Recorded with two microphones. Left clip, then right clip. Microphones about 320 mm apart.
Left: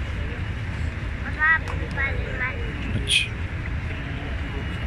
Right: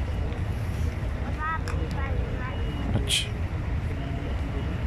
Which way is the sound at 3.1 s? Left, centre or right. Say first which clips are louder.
Left 6 dB; right.